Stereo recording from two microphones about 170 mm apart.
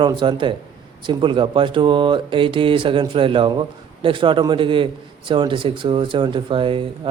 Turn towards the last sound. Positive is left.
turn(degrees=-30)  # may be behind; listen again after turning